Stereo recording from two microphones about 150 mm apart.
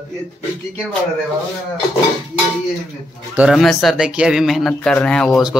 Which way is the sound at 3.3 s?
5° right (ahead or behind).